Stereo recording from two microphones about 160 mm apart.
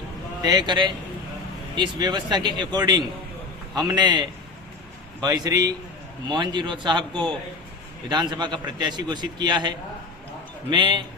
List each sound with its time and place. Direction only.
0.4 s speech: 25° right (ahead or behind)